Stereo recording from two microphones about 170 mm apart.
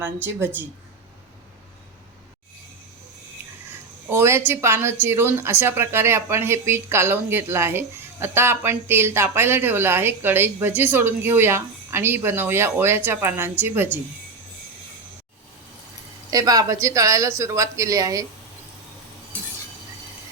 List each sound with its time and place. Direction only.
4.1 s speech: 15° right (ahead or behind)
16.3 s a woman's voice: 20° right (ahead or behind)